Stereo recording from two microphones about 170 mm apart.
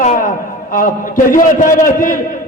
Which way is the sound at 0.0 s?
50° left (ahead or behind).